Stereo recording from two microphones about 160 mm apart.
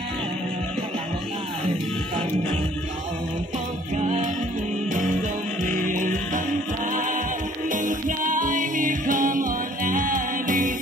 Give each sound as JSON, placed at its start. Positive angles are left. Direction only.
{"t": 3.9, "sound": "music", "side_deg": -45}
{"t": 5.6, "sound": "music", "side_deg": -55}